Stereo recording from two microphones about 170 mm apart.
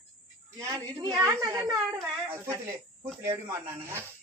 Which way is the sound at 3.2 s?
15° right (ahead or behind).